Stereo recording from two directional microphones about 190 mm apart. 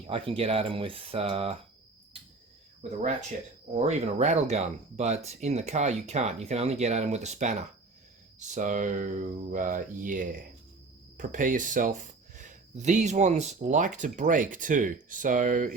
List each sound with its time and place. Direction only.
0.1 s speech: 30° right (ahead or behind)
3.8 s speech: 35° right (ahead or behind)